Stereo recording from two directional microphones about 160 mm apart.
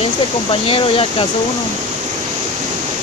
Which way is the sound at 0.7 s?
35° left (ahead or behind).